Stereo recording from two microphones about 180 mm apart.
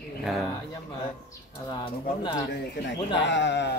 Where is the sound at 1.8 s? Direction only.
25° left (ahead or behind).